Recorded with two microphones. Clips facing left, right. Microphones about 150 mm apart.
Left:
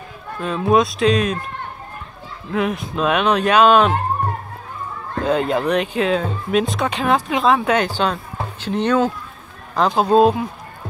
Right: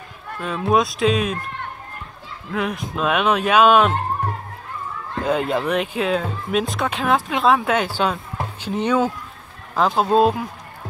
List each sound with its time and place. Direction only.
0.4 s speech: centre (ahead or behind)
2.5 s speech: centre (ahead or behind)
5.2 s speech: centre (ahead or behind)